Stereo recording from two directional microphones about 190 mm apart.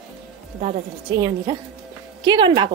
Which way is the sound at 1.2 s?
25° right (ahead or behind).